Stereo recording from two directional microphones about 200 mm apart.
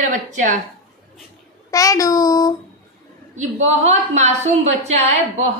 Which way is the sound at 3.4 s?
35° right (ahead or behind).